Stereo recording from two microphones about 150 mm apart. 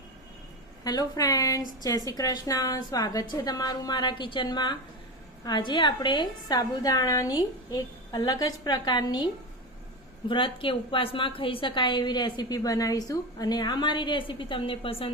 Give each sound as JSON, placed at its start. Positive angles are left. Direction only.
{"t": 0.9, "sound": "a woman's voice", "side_deg": 25}